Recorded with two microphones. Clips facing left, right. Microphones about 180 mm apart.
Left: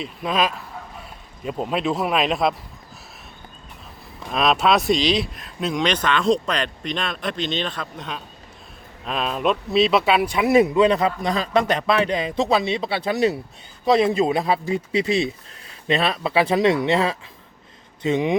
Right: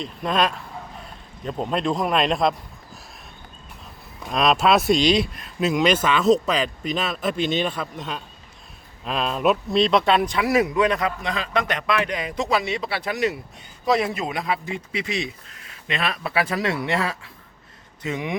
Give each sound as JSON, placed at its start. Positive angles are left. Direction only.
{"t": 0.0, "sound": "a man's voice", "side_deg": 5}
{"t": 4.2, "sound": "a man's voice", "side_deg": 0}
{"t": 10.3, "sound": "a man's voice", "side_deg": 20}